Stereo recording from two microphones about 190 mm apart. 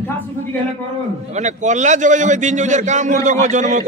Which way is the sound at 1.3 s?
40° right (ahead or behind).